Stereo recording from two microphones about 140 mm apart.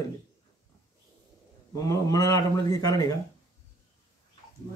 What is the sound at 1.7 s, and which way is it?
Speech, 25° left (ahead or behind).